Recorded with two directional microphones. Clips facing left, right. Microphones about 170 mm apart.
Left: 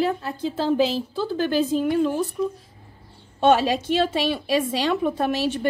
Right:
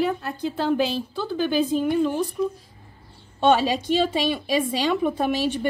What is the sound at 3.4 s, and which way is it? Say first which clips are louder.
A woman's voice: left 1 dB; centre (ahead or behind).